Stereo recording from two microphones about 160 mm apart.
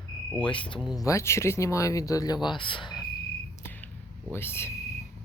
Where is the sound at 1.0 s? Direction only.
20° left (ahead or behind).